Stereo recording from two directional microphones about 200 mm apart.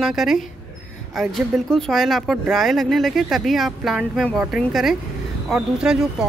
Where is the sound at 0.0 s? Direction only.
Centre (ahead or behind).